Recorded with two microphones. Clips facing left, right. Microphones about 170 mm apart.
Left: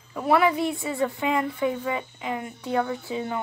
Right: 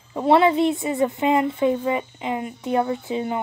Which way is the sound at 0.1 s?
25° right (ahead or behind).